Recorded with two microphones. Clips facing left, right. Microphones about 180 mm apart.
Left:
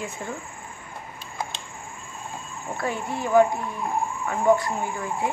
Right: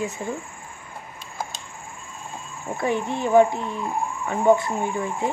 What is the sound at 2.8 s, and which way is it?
A woman's voice, 20° right (ahead or behind).